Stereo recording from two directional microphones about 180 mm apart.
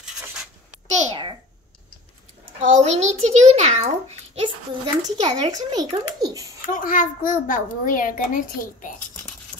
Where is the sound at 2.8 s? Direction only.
40° right (ahead or behind).